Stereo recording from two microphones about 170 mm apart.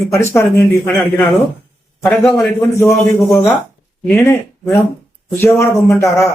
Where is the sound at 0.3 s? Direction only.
15° left (ahead or behind).